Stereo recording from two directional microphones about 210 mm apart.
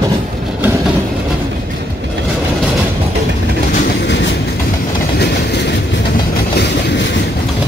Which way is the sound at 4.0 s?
55° left (ahead or behind).